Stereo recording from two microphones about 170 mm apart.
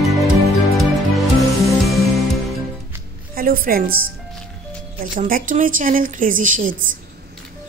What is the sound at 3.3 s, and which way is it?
Speech, 60° right (ahead or behind).